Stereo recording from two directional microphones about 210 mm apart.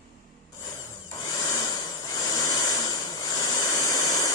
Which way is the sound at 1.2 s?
15° left (ahead or behind).